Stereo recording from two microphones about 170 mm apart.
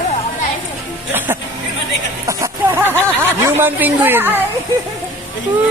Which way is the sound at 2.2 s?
15° right (ahead or behind).